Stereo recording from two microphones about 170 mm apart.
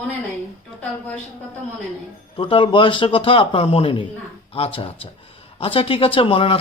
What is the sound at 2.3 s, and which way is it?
Speech, 30° left (ahead or behind).